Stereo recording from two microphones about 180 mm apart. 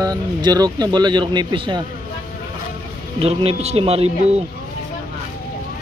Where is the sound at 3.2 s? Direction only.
35° right (ahead or behind).